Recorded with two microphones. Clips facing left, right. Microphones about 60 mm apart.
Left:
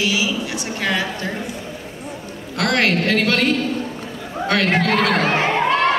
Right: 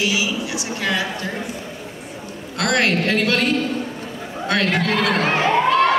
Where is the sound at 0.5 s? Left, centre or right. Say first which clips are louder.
Left 1 dB; left.